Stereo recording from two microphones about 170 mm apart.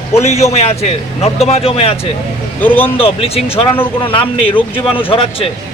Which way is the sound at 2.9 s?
35° left (ahead or behind).